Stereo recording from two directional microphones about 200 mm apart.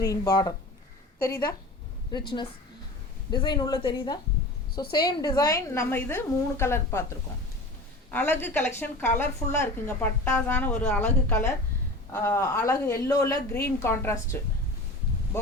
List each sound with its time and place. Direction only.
0.0 s a woman's voice: 20° left (ahead or behind)
2.1 s a woman's voice: 25° left (ahead or behind)
8.1 s a woman's voice: 10° left (ahead or behind)